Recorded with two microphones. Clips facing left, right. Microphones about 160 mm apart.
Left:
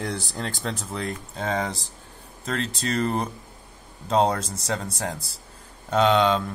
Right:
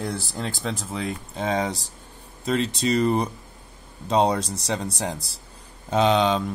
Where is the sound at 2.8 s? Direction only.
10° right (ahead or behind).